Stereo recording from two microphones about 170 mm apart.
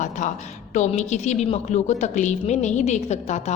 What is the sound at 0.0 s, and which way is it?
A woman's voice, 45° left (ahead or behind).